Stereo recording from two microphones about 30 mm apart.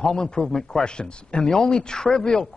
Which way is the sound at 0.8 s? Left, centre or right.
Left.